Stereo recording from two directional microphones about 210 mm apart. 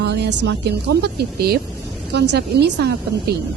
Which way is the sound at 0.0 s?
55° right (ahead or behind).